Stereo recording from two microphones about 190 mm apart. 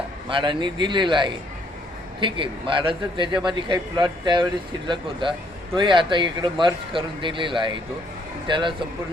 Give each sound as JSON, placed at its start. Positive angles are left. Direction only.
{"t": 0.3, "sound": "a man's voice", "side_deg": -25}